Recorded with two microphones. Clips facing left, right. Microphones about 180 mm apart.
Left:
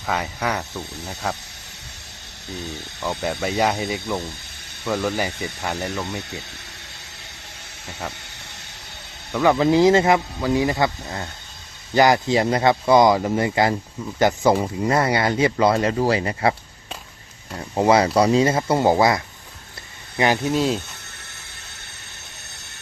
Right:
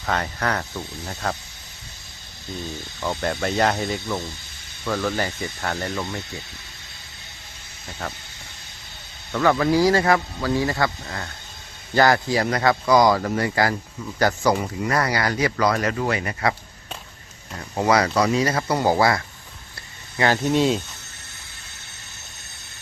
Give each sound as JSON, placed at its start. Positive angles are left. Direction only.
{"t": 0.0, "sound": "speech", "side_deg": 10}
{"t": 3.0, "sound": "speech", "side_deg": 5}
{"t": 8.0, "sound": "speech", "side_deg": 10}
{"t": 9.3, "sound": "speech", "side_deg": 15}
{"t": 17.6, "sound": "speech", "side_deg": 25}
{"t": 20.4, "sound": "speech", "side_deg": 0}